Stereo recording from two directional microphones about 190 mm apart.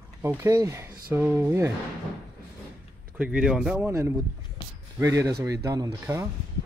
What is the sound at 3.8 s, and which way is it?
Speech, 15° right (ahead or behind).